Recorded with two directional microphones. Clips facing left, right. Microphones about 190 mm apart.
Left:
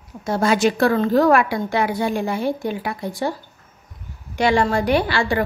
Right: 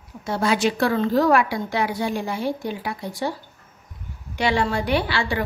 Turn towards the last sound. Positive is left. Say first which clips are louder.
# left 4 dB
turn(degrees=45)  # may be behind; listen again after turning